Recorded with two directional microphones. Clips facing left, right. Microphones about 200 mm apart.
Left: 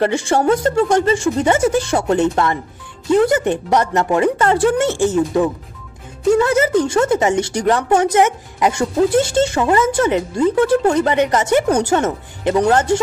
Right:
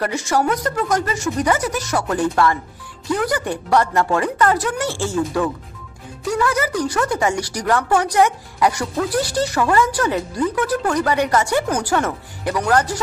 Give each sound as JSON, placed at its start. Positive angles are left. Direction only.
{"t": 0.0, "sound": "speech", "side_deg": 30}